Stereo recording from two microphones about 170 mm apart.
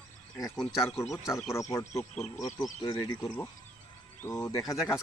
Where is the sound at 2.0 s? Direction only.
Centre (ahead or behind).